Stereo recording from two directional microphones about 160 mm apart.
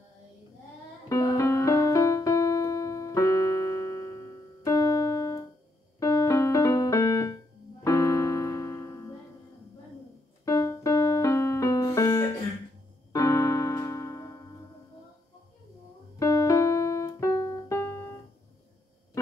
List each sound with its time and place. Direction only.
1.0 s piano: 20° left (ahead or behind)
4.6 s music: 20° left (ahead or behind)
5.9 s keyboard: 20° left (ahead or behind)
7.8 s piano: 20° left (ahead or behind)
10.4 s music: 20° left (ahead or behind)
13.1 s keyboard: 20° left (ahead or behind)
16.2 s keyboard: 20° left (ahead or behind)